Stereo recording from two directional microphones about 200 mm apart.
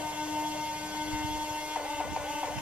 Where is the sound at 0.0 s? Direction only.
5° right (ahead or behind).